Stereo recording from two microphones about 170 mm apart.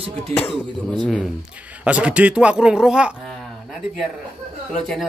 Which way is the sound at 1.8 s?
5° right (ahead or behind).